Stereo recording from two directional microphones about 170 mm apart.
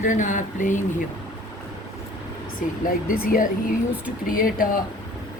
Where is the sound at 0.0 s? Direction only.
50° left (ahead or behind).